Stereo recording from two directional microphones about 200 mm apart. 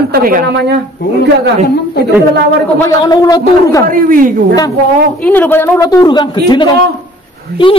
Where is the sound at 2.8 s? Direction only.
15° left (ahead or behind).